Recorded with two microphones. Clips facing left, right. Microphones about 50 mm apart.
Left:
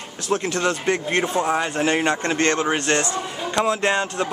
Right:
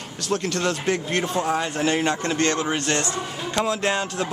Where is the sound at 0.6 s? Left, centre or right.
Centre.